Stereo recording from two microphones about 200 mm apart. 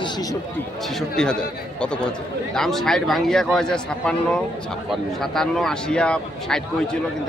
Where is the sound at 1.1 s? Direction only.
5° left (ahead or behind).